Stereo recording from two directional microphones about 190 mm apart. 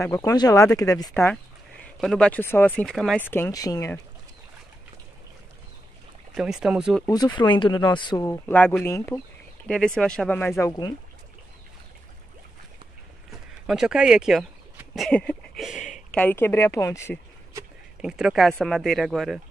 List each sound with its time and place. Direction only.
0.0 s speech: 15° left (ahead or behind)
6.3 s speech: 5° right (ahead or behind)
7.3 s speech: 25° left (ahead or behind)
9.7 s speech: 5° left (ahead or behind)
13.3 s speech: 5° right (ahead or behind); by 17.2 s 15° left (ahead or behind)
18.0 s speech: 5° right (ahead or behind)